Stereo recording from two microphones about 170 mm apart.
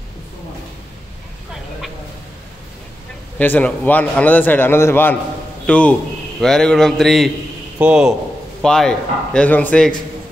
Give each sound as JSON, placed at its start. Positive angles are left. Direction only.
{"t": 3.3, "sound": "a man's voice", "side_deg": 10}